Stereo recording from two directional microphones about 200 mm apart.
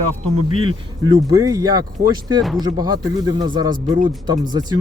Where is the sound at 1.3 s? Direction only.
15° right (ahead or behind).